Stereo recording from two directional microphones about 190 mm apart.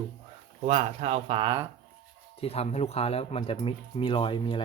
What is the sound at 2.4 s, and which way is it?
Speech, 30° left (ahead or behind).